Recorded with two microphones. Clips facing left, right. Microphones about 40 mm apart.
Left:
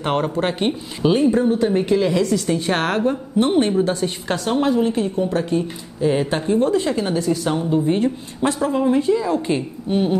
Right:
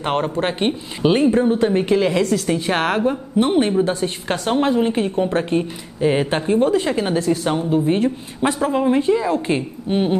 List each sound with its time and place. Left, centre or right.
0.0 s a woman's voice: centre
1.1 s speech: right
1.4 s a woman's voice: right
2.4 s a woman's voice: centre
4.3 s a woman's voice: right